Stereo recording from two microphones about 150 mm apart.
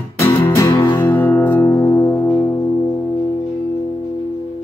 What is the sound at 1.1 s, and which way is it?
Music, 15° left (ahead or behind).